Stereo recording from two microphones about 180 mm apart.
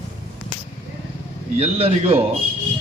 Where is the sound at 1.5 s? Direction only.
35° right (ahead or behind).